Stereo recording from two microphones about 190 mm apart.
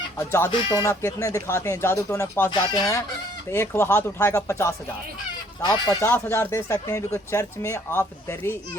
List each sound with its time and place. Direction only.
0.2 s speech: 15° left (ahead or behind)
2.5 s chicken: 20° left (ahead or behind)
3.5 s speech: 10° left (ahead or behind)